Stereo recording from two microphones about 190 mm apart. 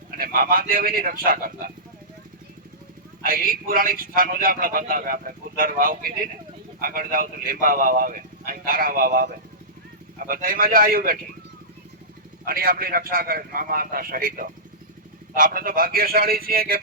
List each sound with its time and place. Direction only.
0.2 s speech: 50° right (ahead or behind)
3.2 s speech: 50° right (ahead or behind)
12.5 s speech: 50° right (ahead or behind)